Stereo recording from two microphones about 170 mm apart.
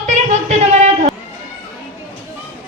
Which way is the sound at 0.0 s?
45° right (ahead or behind).